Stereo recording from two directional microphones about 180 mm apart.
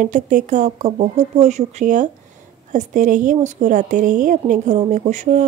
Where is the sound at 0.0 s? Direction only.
45° right (ahead or behind).